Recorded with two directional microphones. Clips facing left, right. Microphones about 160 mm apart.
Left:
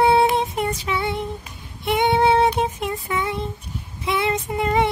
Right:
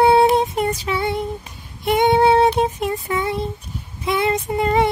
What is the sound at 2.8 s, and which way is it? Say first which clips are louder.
Music: right 3 dB; 40° right (ahead or behind).